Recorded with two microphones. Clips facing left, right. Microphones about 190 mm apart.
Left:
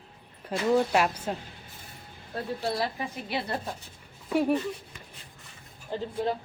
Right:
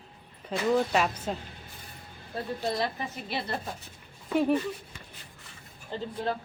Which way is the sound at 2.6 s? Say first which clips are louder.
Even; 10° left (ahead or behind).